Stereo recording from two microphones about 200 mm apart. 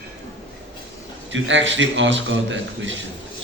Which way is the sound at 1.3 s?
70° right (ahead or behind).